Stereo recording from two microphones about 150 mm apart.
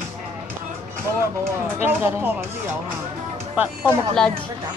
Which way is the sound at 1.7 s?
15° right (ahead or behind).